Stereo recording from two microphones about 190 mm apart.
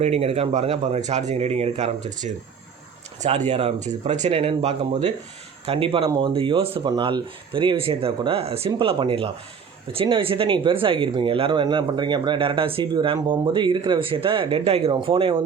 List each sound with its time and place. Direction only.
0.0 s speech: 30° right (ahead or behind)